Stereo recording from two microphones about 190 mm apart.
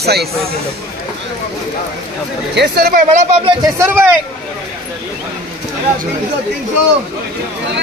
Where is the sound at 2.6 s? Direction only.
55° right (ahead or behind).